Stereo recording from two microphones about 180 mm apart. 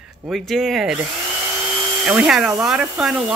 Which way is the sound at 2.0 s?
5° right (ahead or behind).